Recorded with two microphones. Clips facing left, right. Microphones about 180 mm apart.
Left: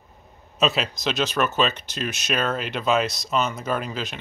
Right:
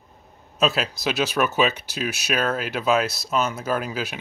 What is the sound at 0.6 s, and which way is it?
Speech, centre (ahead or behind).